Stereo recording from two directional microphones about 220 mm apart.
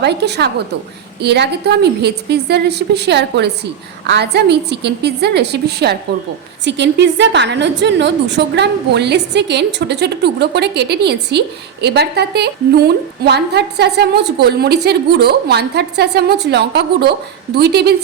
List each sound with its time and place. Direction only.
0.0 s a woman's voice: 50° right (ahead or behind)